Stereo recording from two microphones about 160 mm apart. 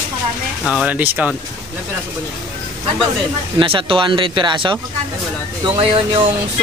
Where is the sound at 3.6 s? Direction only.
35° right (ahead or behind).